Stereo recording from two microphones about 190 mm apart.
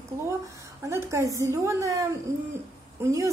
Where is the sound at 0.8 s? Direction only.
15° right (ahead or behind).